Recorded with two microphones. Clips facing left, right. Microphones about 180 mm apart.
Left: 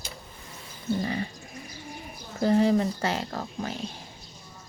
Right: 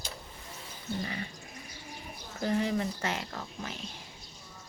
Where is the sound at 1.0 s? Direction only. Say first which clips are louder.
Left 7 dB; 35° left (ahead or behind).